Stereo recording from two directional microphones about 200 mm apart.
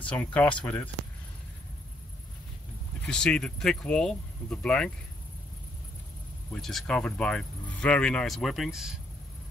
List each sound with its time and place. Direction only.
0.1 s speech: 5° left (ahead or behind)
3.1 s speech: 5° left (ahead or behind)
6.5 s speech: 5° left (ahead or behind)